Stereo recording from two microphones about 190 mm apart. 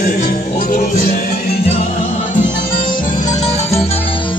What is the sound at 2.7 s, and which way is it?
Music, 40° left (ahead or behind).